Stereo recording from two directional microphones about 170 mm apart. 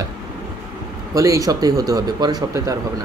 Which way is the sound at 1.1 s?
20° right (ahead or behind).